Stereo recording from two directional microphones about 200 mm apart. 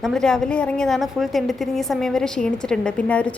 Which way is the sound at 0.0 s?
Centre (ahead or behind).